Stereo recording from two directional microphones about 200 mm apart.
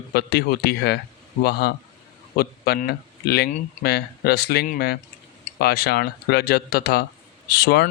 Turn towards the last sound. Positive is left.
turn(degrees=55)  # may be behind; listen again after turning